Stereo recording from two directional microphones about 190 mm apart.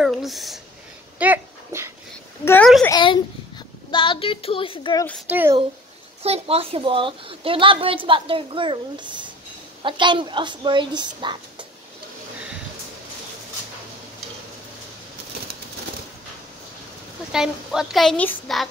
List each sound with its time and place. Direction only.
0.0 s speech: centre (ahead or behind)
1.2 s dog: 10° right (ahead or behind)
2.4 s a sound: 10° left (ahead or behind)
2.8 s a child's voice: 20° left (ahead or behind)
3.9 s child singing: 25° left (ahead or behind)
5.3 s a child's voice: 10° right (ahead or behind)
6.2 s a woman's voice: 30° right (ahead or behind)
17.3 s a woman's voice: 5° right (ahead or behind)